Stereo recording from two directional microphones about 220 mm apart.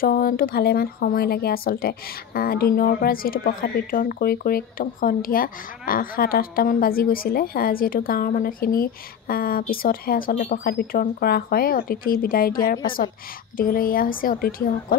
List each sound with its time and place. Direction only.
0.0 s speech: 40° left (ahead or behind)